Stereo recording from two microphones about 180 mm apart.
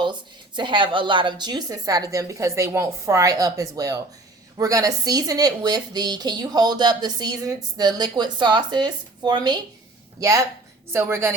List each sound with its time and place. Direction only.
0.0 s a woman's voice: 25° right (ahead or behind)